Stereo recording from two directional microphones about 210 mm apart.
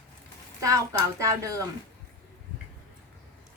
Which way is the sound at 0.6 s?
15° right (ahead or behind).